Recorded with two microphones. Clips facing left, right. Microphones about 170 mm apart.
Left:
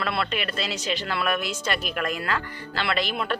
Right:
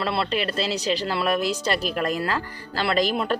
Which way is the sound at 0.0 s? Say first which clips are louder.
Right 3 dB; 30° right (ahead or behind).